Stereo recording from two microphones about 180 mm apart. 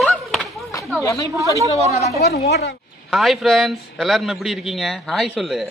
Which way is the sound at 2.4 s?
65° left (ahead or behind).